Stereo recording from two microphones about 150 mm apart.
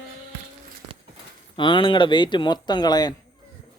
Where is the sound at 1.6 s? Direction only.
35° left (ahead or behind).